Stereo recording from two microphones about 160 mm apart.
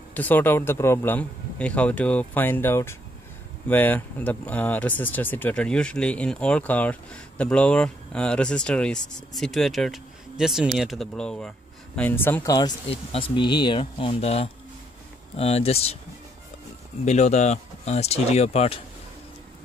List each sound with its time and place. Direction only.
0.1 s speech: 10° left (ahead or behind); by 16.0 s 40° left (ahead or behind)
17.0 s speech: 45° left (ahead or behind)